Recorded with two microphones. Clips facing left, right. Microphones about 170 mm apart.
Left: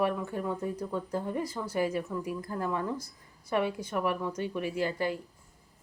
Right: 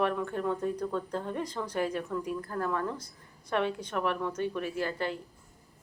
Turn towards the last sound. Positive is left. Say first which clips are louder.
# left 2 dB
turn(degrees=10)  # may be behind; listen again after turning